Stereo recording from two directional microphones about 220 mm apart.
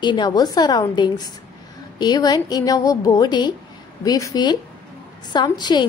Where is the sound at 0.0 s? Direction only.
20° left (ahead or behind).